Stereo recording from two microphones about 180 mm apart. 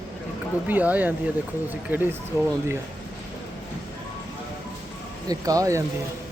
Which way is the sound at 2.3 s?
15° right (ahead or behind).